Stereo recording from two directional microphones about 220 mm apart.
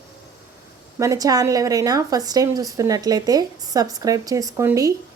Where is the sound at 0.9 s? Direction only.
15° right (ahead or behind).